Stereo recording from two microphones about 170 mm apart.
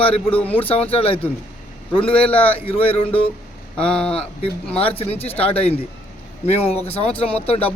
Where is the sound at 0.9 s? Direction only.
35° left (ahead or behind).